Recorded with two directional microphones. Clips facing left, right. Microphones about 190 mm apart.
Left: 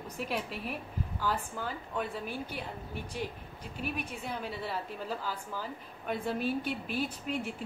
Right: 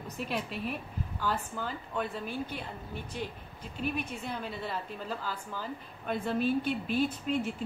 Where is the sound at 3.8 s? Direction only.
10° left (ahead or behind).